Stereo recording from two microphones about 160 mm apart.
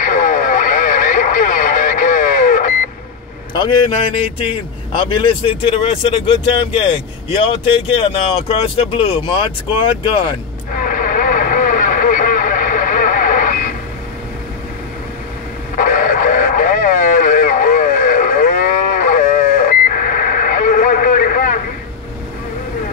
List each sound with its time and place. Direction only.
0.0 s radio: 55° left (ahead or behind)
3.5 s speech: 30° left (ahead or behind)
10.7 s vehicle: 55° left (ahead or behind)
15.7 s radio: 55° left (ahead or behind)